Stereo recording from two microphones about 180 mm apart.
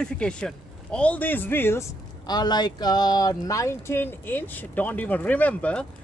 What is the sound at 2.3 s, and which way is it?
Speech, 25° left (ahead or behind).